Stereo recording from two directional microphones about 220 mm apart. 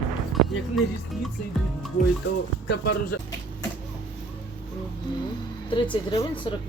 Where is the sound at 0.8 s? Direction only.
Centre (ahead or behind).